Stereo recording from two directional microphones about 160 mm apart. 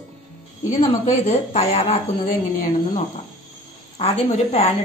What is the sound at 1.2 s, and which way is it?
Speech, 40° left (ahead or behind).